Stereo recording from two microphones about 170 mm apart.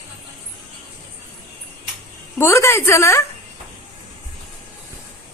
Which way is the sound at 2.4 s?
15° left (ahead or behind).